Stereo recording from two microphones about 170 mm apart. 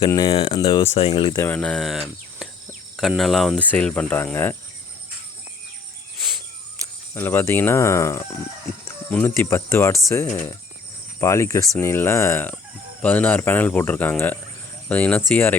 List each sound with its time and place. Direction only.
0.0 s speech: 25° left (ahead or behind)
0.9 s speech: 35° left (ahead or behind)
1.5 s speech: 5° left (ahead or behind)
3.0 s cricket: centre (ahead or behind)
3.7 s speech: 10° left (ahead or behind)
7.1 s speech: 15° left (ahead or behind)